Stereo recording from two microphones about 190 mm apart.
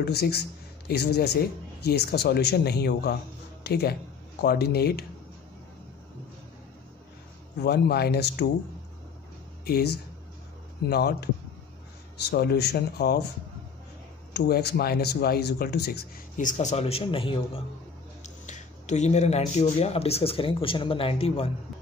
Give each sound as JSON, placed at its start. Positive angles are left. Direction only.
{"t": 0.0, "sound": "speech", "side_deg": 60}
{"t": 7.6, "sound": "speech", "side_deg": 60}
{"t": 9.7, "sound": "speech", "side_deg": 55}
{"t": 12.3, "sound": "speech", "side_deg": 60}
{"t": 14.3, "sound": "speech", "side_deg": 60}
{"t": 16.3, "sound": "speech", "side_deg": 40}
{"t": 18.2, "sound": "speech", "side_deg": 40}